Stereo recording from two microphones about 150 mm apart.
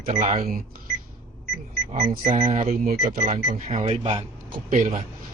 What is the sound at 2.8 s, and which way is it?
Speech, 70° right (ahead or behind).